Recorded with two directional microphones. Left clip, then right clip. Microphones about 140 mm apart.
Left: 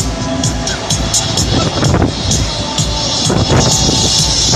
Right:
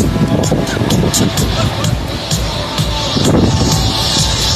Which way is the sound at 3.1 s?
15° left (ahead or behind).